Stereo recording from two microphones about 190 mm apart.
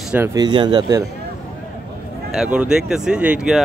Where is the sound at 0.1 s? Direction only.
15° right (ahead or behind).